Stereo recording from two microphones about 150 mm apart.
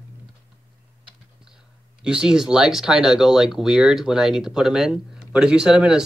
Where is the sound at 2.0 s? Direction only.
5° right (ahead or behind).